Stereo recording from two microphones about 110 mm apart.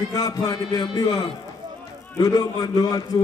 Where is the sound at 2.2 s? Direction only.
35° left (ahead or behind).